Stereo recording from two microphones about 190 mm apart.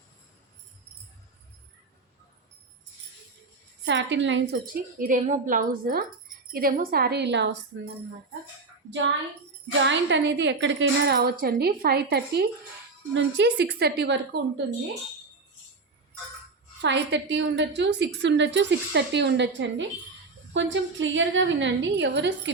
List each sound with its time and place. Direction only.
3.8 s a woman's voice: 70° right (ahead or behind)
4.6 s speech: 50° right (ahead or behind); by 7.5 s 65° right (ahead or behind)
8.9 s a woman's voice: 70° right (ahead or behind)
16.8 s a woman's voice: 70° right (ahead or behind)